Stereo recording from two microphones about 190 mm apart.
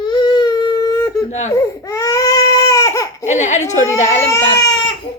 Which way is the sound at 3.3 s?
40° left (ahead or behind).